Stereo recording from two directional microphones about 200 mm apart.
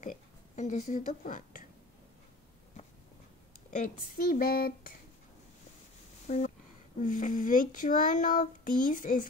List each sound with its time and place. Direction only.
0.0 s speech: 40° left (ahead or behind)
3.7 s speech: 45° left (ahead or behind)
6.2 s a sound: 40° left (ahead or behind)
7.0 s child singing: 40° left (ahead or behind)